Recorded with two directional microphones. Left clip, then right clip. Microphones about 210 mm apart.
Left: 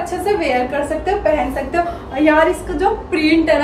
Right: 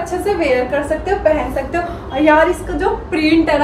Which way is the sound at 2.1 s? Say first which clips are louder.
Right 2 dB; 5° left (ahead or behind).